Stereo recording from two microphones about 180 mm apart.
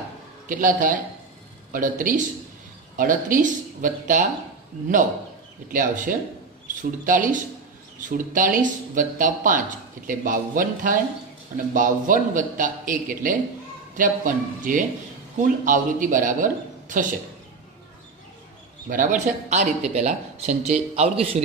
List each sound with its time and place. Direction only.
0.5 s a man's voice: 50° right (ahead or behind)
5.7 s a man's voice: 50° right (ahead or behind)
18.9 s speech: 45° right (ahead or behind)